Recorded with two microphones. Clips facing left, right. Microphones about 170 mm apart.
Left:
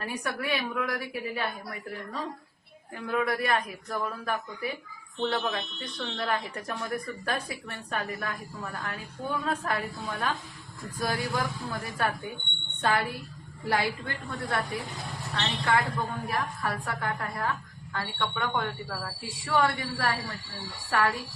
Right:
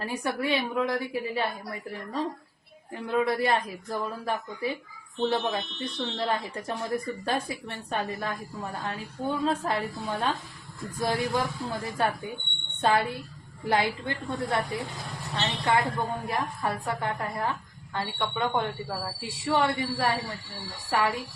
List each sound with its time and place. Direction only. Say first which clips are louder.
0.0 s speech: right 3 dB; 25° right (ahead or behind)
3.1 s speech: right 2 dB; 25° right (ahead or behind)